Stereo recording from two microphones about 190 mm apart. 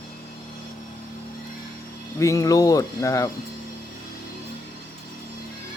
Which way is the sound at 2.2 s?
15° left (ahead or behind).